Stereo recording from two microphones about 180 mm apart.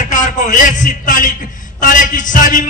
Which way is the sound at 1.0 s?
45° left (ahead or behind).